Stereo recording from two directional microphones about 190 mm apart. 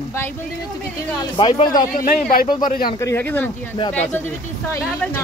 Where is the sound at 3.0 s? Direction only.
10° left (ahead or behind).